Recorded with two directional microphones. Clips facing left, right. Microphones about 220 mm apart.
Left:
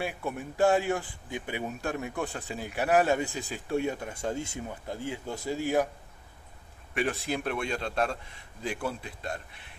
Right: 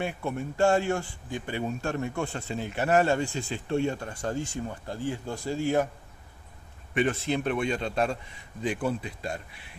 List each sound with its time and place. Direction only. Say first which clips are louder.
0.0 s speech: right 2 dB; centre (ahead or behind)
0.7 s a man's voice: right 1 dB; 15° left (ahead or behind)
6.9 s speech: right 4 dB; centre (ahead or behind)